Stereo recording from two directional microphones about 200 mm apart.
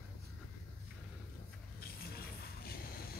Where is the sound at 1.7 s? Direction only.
50° left (ahead or behind).